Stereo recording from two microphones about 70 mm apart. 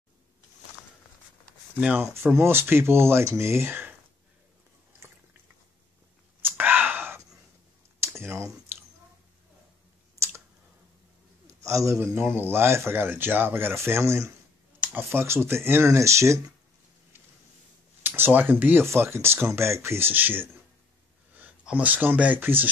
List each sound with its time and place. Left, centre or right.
2.0 s speech: right
6.5 s whispering: right
8.0 s computer keyboard: right
10.1 s clicking: right
11.4 s a man's voice: right
18.0 s speech: right
18.9 s speech: right
21.6 s speech: right